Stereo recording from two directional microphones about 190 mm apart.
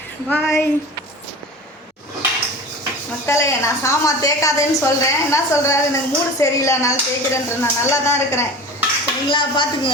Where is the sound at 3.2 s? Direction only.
15° left (ahead or behind).